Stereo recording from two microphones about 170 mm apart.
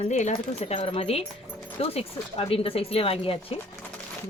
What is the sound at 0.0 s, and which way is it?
Speech, 45° left (ahead or behind).